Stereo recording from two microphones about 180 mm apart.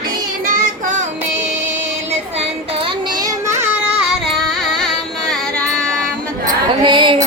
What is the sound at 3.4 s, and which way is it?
Child singing, 15° right (ahead or behind).